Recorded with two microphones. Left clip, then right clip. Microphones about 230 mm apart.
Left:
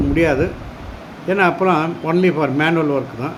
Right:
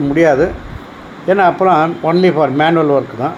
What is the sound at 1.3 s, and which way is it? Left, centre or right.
Speech, centre.